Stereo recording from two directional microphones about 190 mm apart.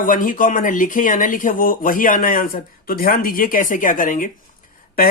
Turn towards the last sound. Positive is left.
turn(degrees=50)  # may be behind; listen again after turning